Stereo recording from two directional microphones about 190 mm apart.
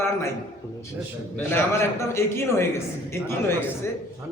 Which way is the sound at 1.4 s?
15° left (ahead or behind).